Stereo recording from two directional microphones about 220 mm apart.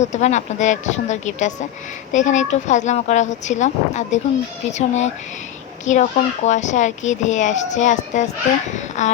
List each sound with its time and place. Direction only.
0.0 s a woman's voice: 30° left (ahead or behind)